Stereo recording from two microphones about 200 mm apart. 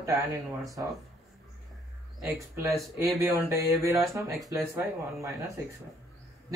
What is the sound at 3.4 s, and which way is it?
Speech, 15° right (ahead or behind).